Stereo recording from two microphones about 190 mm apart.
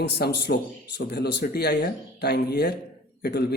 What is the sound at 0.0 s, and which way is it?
Speech, 60° left (ahead or behind).